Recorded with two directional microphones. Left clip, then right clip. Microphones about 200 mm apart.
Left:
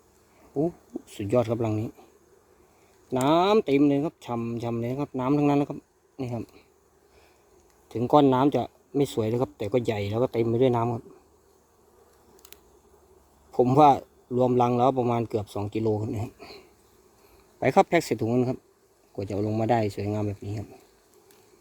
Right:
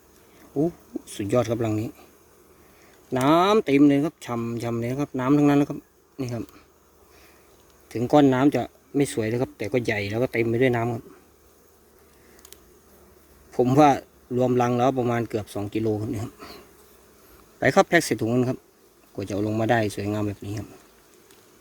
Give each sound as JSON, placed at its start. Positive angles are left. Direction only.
{"t": 0.5, "sound": "a man's voice", "side_deg": 0}
{"t": 3.1, "sound": "a man's voice", "side_deg": 0}
{"t": 7.9, "sound": "a man's voice", "side_deg": 0}
{"t": 13.5, "sound": "a man's voice", "side_deg": 0}